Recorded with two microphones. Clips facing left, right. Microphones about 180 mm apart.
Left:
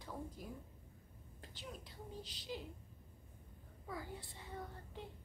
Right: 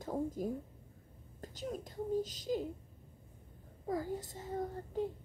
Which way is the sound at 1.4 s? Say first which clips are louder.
Right 11 dB; 45° right (ahead or behind).